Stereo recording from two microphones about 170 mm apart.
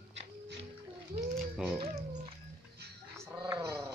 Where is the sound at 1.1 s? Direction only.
35° right (ahead or behind).